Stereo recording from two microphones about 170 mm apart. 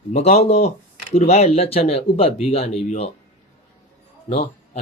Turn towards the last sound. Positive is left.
turn(degrees=40)  # may be behind; listen again after turning